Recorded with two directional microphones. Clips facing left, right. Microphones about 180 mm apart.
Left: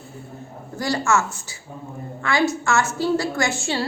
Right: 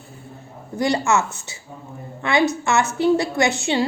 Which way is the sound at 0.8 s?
20° right (ahead or behind).